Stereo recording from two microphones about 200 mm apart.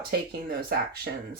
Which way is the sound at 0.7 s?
50° right (ahead or behind).